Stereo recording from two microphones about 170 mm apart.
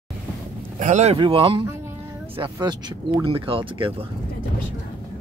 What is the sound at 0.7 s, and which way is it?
Speech, 45° right (ahead or behind).